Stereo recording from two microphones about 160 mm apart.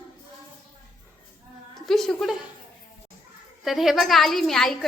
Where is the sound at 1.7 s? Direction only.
Centre (ahead or behind).